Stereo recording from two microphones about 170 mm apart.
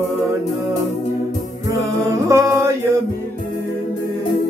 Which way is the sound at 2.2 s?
20° right (ahead or behind).